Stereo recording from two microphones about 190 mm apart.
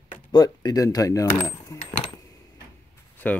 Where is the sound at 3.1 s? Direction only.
10° left (ahead or behind).